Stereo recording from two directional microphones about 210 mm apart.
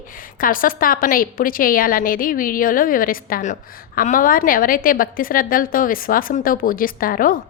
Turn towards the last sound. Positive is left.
turn(degrees=40)  # may be behind; listen again after turning